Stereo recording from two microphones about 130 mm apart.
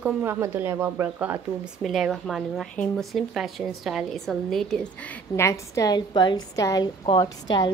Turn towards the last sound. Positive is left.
turn(degrees=35)  # may be behind; listen again after turning